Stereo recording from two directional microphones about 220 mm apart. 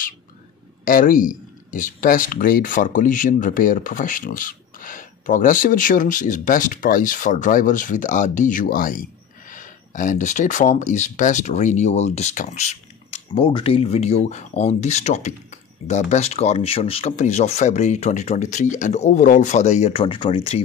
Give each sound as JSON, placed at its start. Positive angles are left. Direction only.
{"t": 0.8, "sound": "speech", "side_deg": 40}